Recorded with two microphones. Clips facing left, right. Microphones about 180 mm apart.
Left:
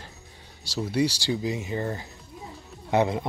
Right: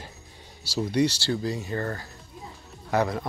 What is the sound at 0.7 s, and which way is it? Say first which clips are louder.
A man's voice: right 1 dB; 10° left (ahead or behind).